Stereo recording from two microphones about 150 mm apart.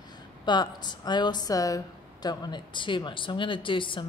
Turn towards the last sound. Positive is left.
turn(degrees=35)  # may be behind; listen again after turning